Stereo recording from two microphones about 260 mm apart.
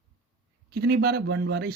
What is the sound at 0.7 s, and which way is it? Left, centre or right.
Speech, right.